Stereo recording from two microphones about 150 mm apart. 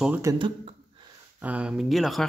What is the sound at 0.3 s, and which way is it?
Speech, 20° right (ahead or behind).